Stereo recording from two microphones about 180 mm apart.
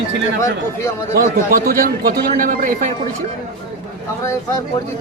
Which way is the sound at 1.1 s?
55° right (ahead or behind).